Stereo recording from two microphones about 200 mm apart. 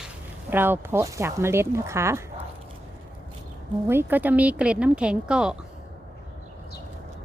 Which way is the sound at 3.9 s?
10° right (ahead or behind).